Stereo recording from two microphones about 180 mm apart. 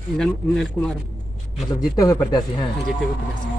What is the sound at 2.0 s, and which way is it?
Speech, 20° left (ahead or behind).